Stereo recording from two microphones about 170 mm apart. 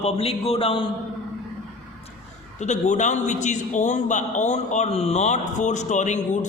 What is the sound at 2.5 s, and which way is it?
A man's voice, 45° left (ahead or behind).